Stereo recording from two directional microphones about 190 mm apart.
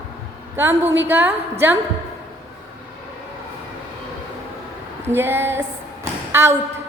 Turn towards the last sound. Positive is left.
turn(degrees=-15)  # may be behind; listen again after turning